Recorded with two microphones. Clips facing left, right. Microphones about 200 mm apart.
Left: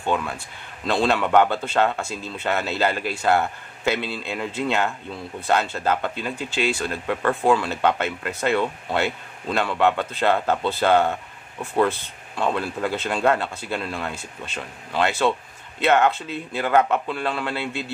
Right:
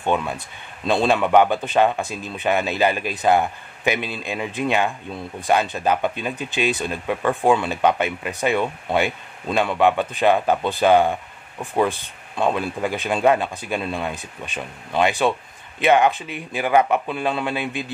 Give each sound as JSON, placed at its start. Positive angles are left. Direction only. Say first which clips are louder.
{"t": 0.0, "sound": "speech", "louder": "right 2 dB", "side_deg": -20}